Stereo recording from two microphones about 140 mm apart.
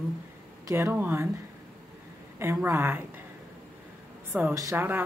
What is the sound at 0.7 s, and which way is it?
Speech, 15° right (ahead or behind).